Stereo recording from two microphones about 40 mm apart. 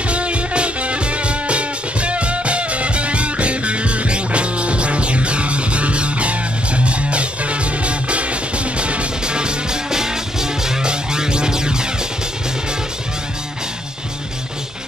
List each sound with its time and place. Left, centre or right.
0.1 s music: right